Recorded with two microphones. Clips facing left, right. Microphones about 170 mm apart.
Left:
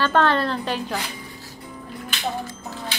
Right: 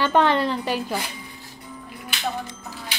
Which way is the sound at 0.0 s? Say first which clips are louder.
Even; 15° right (ahead or behind).